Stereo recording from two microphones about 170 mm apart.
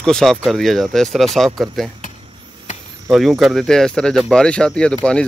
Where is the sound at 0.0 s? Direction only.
Centre (ahead or behind).